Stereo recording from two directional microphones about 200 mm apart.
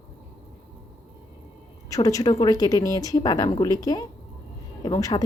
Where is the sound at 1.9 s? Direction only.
15° left (ahead or behind).